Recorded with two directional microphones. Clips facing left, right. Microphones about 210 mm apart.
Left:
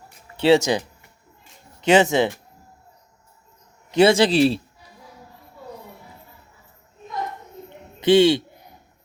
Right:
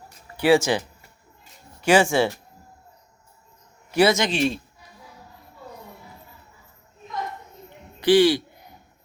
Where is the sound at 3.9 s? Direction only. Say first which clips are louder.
Left 4 dB; 25° left (ahead or behind).